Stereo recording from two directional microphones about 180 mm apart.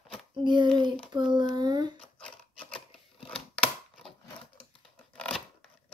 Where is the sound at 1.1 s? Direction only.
25° right (ahead or behind).